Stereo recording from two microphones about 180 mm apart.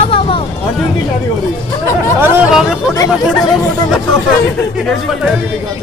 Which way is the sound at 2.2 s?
10° right (ahead or behind).